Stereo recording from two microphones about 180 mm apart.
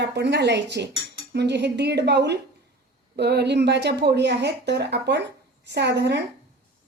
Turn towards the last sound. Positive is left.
turn(degrees=-70)  # may be behind; listen again after turning